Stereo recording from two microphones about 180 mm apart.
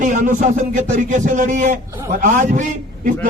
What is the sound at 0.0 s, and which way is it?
A man's voice, 45° right (ahead or behind).